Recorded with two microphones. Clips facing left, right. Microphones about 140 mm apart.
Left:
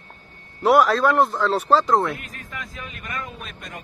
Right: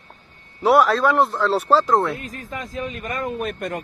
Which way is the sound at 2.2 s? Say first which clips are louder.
Right 5 dB; 35° right (ahead or behind).